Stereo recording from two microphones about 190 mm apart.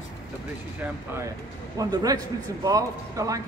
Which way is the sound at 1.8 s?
20° right (ahead or behind).